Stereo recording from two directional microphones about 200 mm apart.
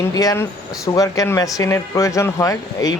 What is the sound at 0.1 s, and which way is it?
A man's voice, 20° left (ahead or behind).